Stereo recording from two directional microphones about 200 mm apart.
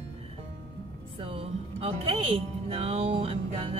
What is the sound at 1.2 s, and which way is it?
Speech, 30° right (ahead or behind).